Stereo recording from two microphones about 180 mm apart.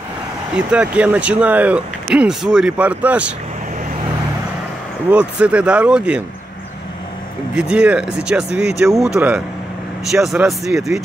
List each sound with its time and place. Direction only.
0.6 s speech: 5° right (ahead or behind)
5.1 s speech: 5° right (ahead or behind)
7.5 s speech: 5° right (ahead or behind)